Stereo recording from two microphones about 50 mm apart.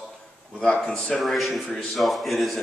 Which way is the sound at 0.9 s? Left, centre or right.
Centre.